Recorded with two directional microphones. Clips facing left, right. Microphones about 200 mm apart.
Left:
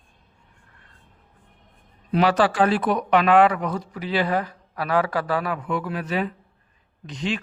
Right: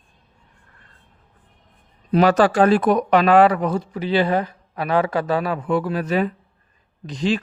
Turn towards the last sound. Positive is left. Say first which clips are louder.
# right 6 dB
turn(degrees=-35)  # may be behind; listen again after turning